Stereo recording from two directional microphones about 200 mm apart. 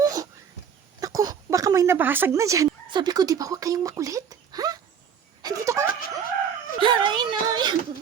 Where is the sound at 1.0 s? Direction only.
20° right (ahead or behind).